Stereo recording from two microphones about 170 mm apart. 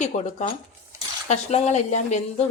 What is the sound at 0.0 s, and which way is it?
Speech, 40° left (ahead or behind).